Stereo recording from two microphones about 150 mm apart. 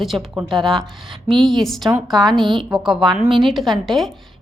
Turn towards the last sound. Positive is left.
turn(degrees=0)  # may be behind; listen again after turning